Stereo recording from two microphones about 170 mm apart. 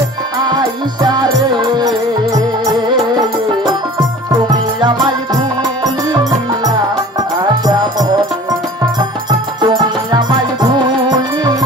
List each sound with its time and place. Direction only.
1.0 s music: 25° right (ahead or behind)
4.3 s music: 25° right (ahead or behind)
9.6 s music: 25° right (ahead or behind)